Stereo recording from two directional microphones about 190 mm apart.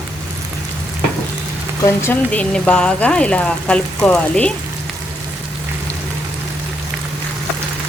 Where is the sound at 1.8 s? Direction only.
10° left (ahead or behind).